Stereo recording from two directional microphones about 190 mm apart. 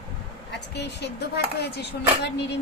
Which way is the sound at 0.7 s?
60° left (ahead or behind).